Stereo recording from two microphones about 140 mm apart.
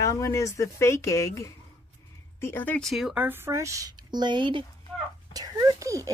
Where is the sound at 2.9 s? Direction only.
5° right (ahead or behind).